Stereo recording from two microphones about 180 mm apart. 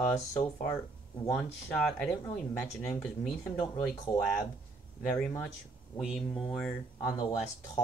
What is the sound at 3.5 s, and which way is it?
Speech, 30° left (ahead or behind).